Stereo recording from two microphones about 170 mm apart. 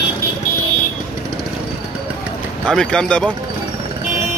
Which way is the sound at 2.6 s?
5° left (ahead or behind).